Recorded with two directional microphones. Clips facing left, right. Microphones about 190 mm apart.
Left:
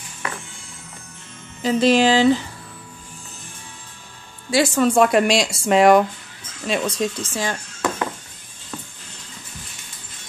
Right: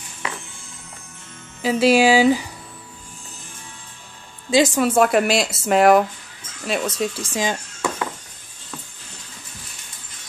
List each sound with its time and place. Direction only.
1.6 s speech: 5° right (ahead or behind)
4.5 s a woman's voice: 20° right (ahead or behind)
4.8 s speech: 5° right (ahead or behind)
7.2 s speech: 15° right (ahead or behind)